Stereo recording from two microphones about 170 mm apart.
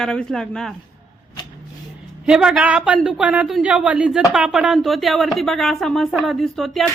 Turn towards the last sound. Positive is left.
turn(degrees=0)  # may be behind; listen again after turning